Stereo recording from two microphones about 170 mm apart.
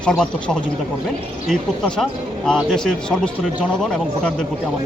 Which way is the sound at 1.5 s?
5° left (ahead or behind).